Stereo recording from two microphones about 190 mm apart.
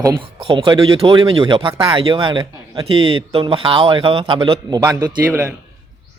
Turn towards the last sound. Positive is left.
turn(degrees=-15)  # may be behind; listen again after turning